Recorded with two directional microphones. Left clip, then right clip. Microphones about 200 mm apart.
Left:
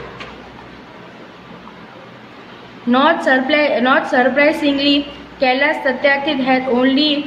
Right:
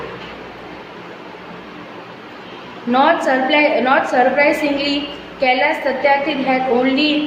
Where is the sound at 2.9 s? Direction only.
25° left (ahead or behind).